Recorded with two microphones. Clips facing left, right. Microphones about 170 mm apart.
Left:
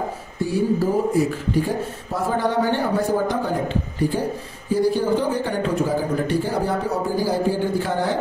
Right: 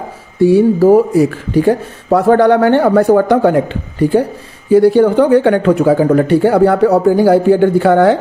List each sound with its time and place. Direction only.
0.4 s speech: 70° right (ahead or behind)